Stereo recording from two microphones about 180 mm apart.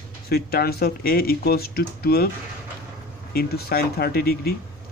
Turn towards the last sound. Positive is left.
turn(degrees=55)  # may be behind; listen again after turning